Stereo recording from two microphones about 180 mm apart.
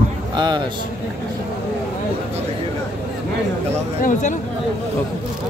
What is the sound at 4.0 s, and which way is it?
Speech, 45° left (ahead or behind).